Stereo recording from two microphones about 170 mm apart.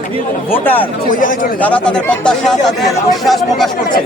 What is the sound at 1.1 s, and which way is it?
Speech, 50° left (ahead or behind).